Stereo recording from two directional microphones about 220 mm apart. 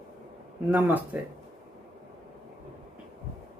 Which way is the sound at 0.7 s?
10° right (ahead or behind).